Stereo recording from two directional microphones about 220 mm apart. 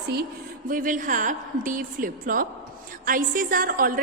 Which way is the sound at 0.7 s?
40° right (ahead or behind).